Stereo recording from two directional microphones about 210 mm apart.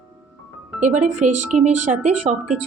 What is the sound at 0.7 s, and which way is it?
Speech, 35° right (ahead or behind).